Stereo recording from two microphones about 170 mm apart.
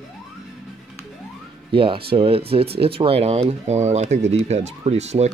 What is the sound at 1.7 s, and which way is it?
Speech, 30° right (ahead or behind).